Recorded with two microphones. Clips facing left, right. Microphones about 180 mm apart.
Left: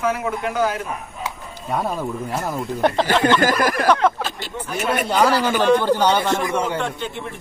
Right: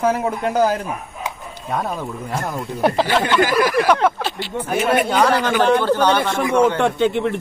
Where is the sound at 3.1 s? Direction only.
45° left (ahead or behind).